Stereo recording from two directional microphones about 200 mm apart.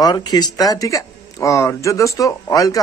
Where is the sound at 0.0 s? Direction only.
20° left (ahead or behind).